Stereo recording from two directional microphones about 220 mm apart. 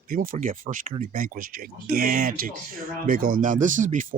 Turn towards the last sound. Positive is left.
turn(degrees=-35)  # may be behind; listen again after turning